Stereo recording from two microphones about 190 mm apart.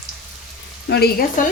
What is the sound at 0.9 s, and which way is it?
Speech, 55° left (ahead or behind).